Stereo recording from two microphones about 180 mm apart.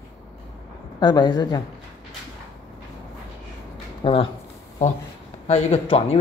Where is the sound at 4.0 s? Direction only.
30° left (ahead or behind).